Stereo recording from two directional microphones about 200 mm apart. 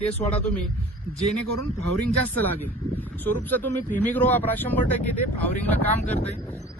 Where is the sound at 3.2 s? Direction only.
10° left (ahead or behind).